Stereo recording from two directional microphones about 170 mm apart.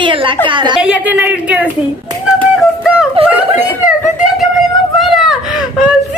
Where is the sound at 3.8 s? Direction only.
5° right (ahead or behind).